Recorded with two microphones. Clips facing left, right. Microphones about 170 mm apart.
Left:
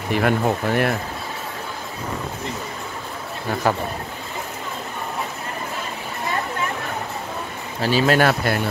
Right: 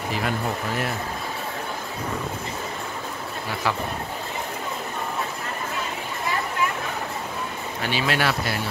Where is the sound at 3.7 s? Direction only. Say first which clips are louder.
Left 5 dB; 45° left (ahead or behind).